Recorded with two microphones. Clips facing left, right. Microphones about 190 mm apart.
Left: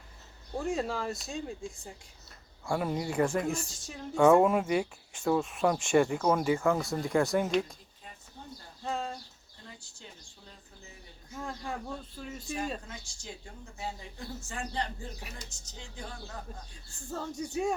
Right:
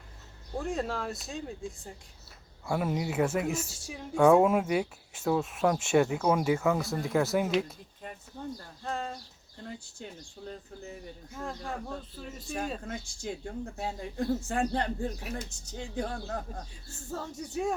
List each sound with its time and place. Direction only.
0.5 s speech: centre (ahead or behind)
8.8 s a sound: centre (ahead or behind)
9.6 s speech: 55° right (ahead or behind)
11.3 s speech: centre (ahead or behind)
12.8 s speech: 55° right (ahead or behind)
17.1 s speech: 5° right (ahead or behind)